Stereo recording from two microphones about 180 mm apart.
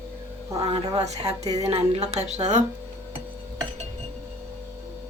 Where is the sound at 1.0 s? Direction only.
35° right (ahead or behind).